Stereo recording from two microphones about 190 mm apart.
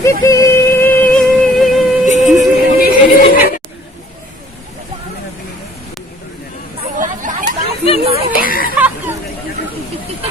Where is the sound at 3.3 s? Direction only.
50° left (ahead or behind).